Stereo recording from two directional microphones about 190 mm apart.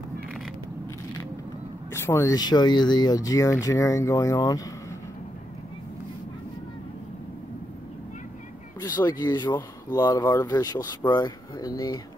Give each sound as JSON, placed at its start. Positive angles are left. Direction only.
{"t": 1.9, "sound": "speech", "side_deg": 15}
{"t": 8.8, "sound": "speech", "side_deg": 20}